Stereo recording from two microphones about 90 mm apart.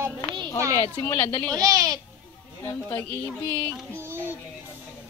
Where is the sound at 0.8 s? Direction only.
35° left (ahead or behind).